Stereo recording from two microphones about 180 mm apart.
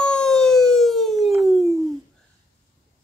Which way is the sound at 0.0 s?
5° left (ahead or behind).